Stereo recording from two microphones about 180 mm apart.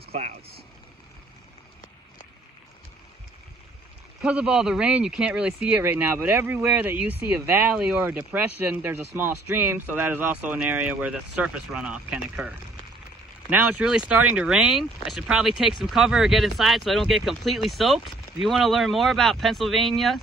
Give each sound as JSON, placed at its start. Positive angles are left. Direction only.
{"t": 0.1, "sound": "speech", "side_deg": -35}
{"t": 4.2, "sound": "speech", "side_deg": -5}